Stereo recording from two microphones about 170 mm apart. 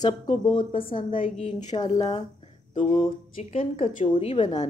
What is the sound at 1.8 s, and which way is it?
Speech, 25° left (ahead or behind).